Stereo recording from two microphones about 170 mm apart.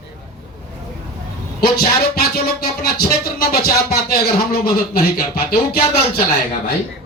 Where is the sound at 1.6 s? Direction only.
65° left (ahead or behind).